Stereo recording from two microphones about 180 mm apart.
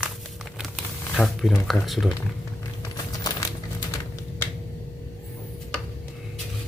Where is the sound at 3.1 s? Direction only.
20° left (ahead or behind).